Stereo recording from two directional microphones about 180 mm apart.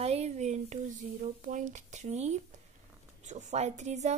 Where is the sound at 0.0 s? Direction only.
35° right (ahead or behind).